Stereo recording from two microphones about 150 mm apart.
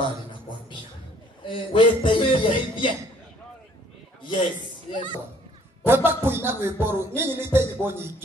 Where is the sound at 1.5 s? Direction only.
35° left (ahead or behind).